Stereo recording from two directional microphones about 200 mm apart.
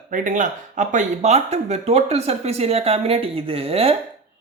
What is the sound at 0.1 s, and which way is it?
Speech, 40° right (ahead or behind).